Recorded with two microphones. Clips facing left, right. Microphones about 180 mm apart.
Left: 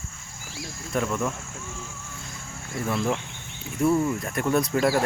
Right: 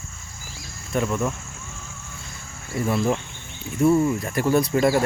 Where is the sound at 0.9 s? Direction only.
5° right (ahead or behind).